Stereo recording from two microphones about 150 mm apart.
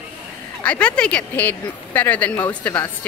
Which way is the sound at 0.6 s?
10° left (ahead or behind).